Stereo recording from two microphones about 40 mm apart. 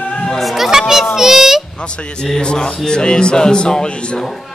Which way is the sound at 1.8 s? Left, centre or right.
Left.